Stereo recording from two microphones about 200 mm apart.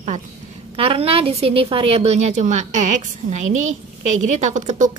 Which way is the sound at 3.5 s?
85° right.